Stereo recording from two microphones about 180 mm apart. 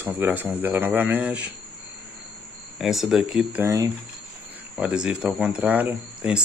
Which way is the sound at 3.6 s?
15° right (ahead or behind).